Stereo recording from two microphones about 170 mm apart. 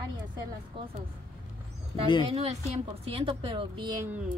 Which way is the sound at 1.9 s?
20° left (ahead or behind).